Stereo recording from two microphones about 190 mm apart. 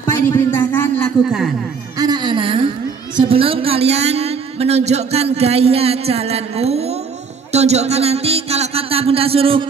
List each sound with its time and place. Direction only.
0.1 s a sound: 15° left (ahead or behind)
2.0 s baby cry: 20° right (ahead or behind)
3.3 s a woman's voice: 30° right (ahead or behind)